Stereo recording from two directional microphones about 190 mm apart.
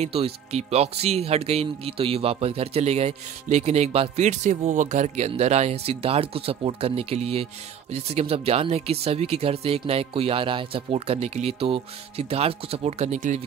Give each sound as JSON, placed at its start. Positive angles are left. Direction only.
{"t": 0.0, "sound": "speech", "side_deg": -30}